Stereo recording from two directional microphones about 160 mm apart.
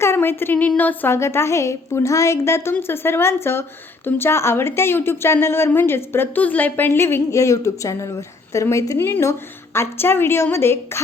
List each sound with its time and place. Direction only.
0.0 s a woman's voice: 15° left (ahead or behind)